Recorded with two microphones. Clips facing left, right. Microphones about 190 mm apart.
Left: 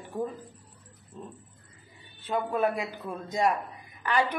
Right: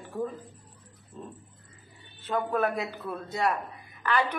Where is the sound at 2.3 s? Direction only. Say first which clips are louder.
Even; 15° left (ahead or behind).